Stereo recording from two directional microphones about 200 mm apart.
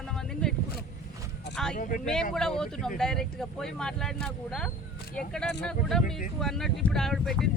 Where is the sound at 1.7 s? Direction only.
45° left (ahead or behind).